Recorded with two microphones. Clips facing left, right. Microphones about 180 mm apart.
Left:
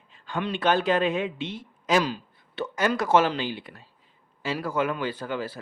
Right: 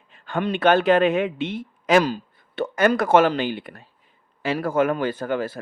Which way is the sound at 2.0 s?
45° right (ahead or behind).